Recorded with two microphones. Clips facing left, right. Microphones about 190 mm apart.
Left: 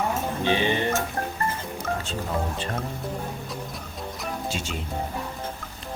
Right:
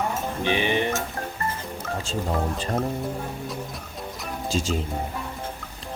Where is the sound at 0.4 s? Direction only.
15° right (ahead or behind).